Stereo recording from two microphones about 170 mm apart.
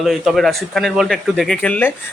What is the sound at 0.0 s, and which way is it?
A man's voice, centre (ahead or behind).